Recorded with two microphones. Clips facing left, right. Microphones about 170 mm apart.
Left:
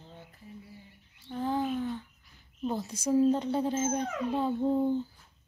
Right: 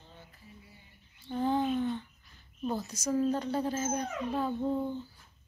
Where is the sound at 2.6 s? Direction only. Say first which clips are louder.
Left 2 dB; 20° left (ahead or behind).